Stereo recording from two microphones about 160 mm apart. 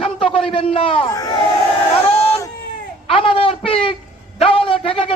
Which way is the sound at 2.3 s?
20° left (ahead or behind).